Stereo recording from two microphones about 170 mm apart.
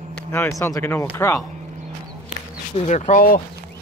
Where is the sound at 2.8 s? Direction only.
45° left (ahead or behind).